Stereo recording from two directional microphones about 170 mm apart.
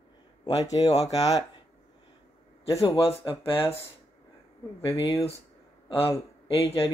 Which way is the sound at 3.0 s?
35° left (ahead or behind).